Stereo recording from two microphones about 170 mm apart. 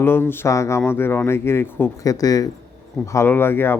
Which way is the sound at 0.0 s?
15° left (ahead or behind).